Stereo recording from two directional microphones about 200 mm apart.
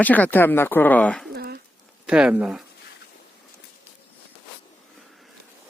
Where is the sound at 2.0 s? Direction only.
5° right (ahead or behind).